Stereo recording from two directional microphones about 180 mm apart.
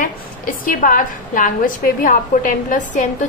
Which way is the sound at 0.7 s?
50° left (ahead or behind).